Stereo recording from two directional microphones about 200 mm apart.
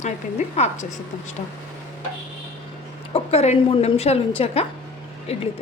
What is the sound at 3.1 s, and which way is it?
A woman's voice, 30° left (ahead or behind).